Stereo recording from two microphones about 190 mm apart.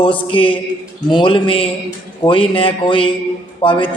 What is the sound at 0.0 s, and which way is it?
A man's voice, 25° left (ahead or behind).